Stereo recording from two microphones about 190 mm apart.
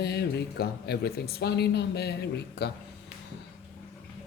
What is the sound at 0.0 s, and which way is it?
Speech, 60° left (ahead or behind).